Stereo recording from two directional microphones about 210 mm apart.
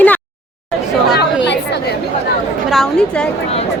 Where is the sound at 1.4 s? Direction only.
55° left (ahead or behind).